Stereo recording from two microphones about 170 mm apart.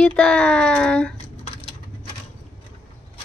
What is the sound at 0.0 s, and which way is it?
Speech, 5° left (ahead or behind).